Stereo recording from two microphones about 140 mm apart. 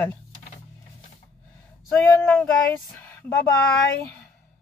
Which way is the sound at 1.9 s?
10° left (ahead or behind).